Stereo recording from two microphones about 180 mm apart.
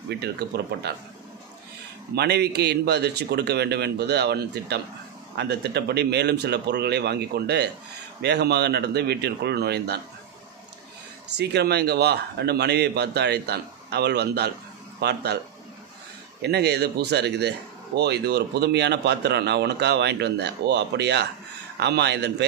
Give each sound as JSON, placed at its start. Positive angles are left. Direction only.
{"t": 0.2, "sound": "a man's voice", "side_deg": -65}
{"t": 2.1, "sound": "a man's voice", "side_deg": -65}
{"t": 11.3, "sound": "a man's voice", "side_deg": -65}
{"t": 16.3, "sound": "speech", "side_deg": -65}